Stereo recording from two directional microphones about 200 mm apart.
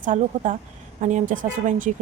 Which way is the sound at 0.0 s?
40° right (ahead or behind).